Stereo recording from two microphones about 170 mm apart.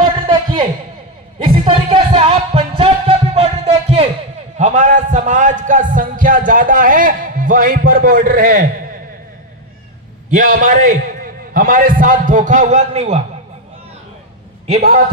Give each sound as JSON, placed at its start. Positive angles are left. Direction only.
{"t": 0.0, "sound": "a sound", "side_deg": -30}
{"t": 1.6, "sound": "music", "side_deg": -35}
{"t": 4.6, "sound": "a man's voice", "side_deg": -45}
{"t": 10.3, "sound": "a man's voice", "side_deg": -50}